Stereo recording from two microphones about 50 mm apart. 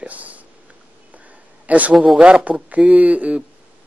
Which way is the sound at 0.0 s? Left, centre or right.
Right.